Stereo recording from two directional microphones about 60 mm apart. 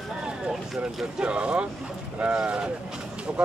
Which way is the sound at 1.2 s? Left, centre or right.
Centre.